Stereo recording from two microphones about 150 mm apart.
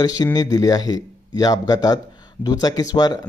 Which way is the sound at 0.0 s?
25° left (ahead or behind).